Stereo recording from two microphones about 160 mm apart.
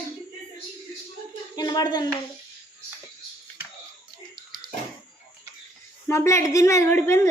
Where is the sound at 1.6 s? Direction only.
25° left (ahead or behind).